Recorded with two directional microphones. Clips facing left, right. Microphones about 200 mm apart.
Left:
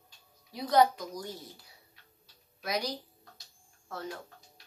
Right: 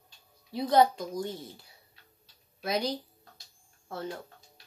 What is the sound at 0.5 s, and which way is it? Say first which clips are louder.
Speech: right 2 dB; 25° right (ahead or behind).